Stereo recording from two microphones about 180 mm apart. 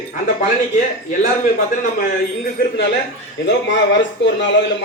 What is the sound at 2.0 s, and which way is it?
Speech, 55° left (ahead or behind).